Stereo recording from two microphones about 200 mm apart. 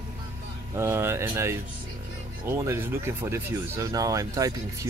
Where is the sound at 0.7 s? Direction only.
10° right (ahead or behind).